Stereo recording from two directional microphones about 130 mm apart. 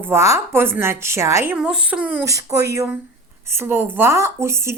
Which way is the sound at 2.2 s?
25° right (ahead or behind).